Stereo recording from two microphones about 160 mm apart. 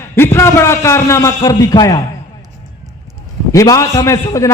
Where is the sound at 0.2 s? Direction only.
15° left (ahead or behind).